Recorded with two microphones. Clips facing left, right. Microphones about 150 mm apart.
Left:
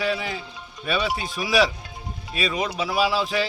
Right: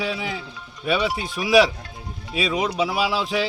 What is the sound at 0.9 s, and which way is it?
Speech, 15° right (ahead or behind).